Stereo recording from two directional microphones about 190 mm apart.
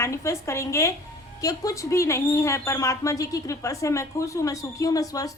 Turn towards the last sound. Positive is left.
turn(degrees=20)  # may be behind; listen again after turning